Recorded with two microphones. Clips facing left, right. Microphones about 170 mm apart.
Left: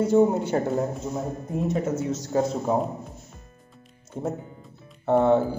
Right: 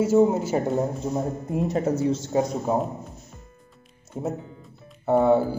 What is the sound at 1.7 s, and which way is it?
Speech, 35° right (ahead or behind).